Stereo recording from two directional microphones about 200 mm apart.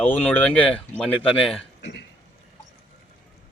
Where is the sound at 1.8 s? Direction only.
60° left (ahead or behind).